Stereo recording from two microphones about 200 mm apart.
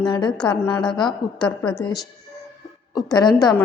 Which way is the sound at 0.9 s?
25° left (ahead or behind).